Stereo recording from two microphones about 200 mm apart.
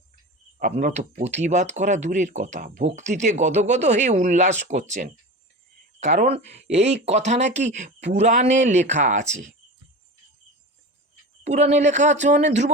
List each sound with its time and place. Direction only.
0.6 s speech: 35° right (ahead or behind)
11.4 s speech: 35° right (ahead or behind)